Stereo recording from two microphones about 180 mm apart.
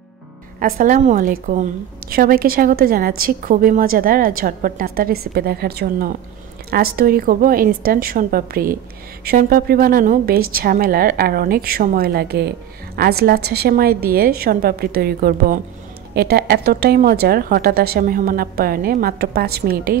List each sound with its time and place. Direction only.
0.6 s a woman's voice: 50° right (ahead or behind)